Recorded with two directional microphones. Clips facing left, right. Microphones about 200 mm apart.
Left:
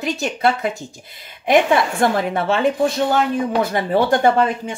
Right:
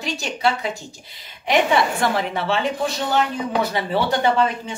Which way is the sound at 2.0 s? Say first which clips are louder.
Left 4 dB; 50° left (ahead or behind).